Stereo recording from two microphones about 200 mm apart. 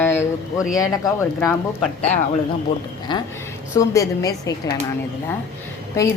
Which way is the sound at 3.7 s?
15° left (ahead or behind).